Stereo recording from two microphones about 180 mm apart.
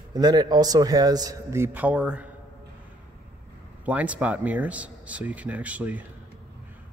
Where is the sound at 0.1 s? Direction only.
20° right (ahead or behind); by 2.2 s 5° right (ahead or behind).